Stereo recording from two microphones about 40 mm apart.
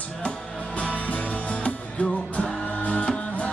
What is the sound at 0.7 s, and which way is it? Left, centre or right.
Music, left.